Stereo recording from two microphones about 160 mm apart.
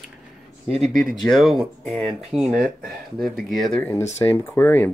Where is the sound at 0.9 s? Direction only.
60° right (ahead or behind).